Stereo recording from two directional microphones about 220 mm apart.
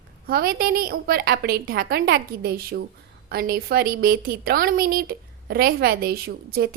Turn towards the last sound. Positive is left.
turn(degrees=-45)  # may be behind; listen again after turning